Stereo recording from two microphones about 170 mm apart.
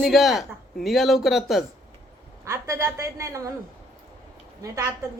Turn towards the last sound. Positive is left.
turn(degrees=-20)  # may be behind; listen again after turning